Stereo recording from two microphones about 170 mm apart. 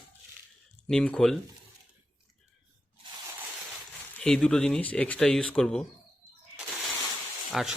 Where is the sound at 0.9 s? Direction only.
5° left (ahead or behind).